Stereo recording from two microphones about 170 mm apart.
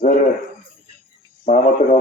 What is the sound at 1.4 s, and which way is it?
Speech, 50° left (ahead or behind).